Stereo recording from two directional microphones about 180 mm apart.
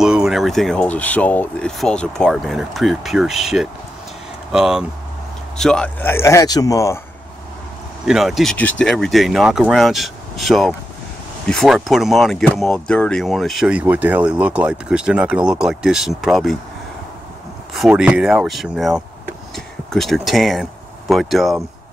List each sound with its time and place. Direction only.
0.0 s a man's voice: 5° right (ahead or behind); by 7.0 s 20° left (ahead or behind)
8.0 s speech: centre (ahead or behind)
17.7 s speech: 5° right (ahead or behind)